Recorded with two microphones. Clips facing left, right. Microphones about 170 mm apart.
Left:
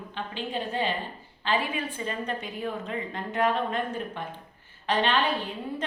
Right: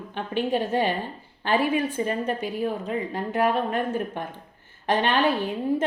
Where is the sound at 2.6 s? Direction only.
40° right (ahead or behind).